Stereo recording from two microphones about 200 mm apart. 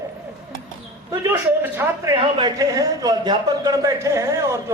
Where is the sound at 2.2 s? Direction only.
25° right (ahead or behind).